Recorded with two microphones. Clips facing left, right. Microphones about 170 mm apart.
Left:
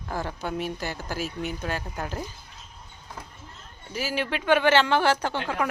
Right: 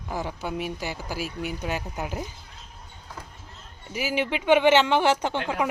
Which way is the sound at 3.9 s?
15° right (ahead or behind).